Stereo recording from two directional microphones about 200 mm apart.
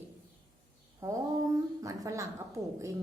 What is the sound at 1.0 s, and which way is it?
A woman's voice, 15° right (ahead or behind).